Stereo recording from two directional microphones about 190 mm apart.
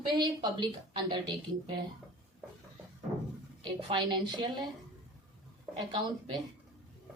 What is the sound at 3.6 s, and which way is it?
Speech, 25° right (ahead or behind).